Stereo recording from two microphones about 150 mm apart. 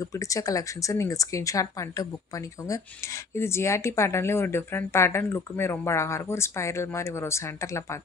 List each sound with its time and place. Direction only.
0.0 s speech: 20° left (ahead or behind)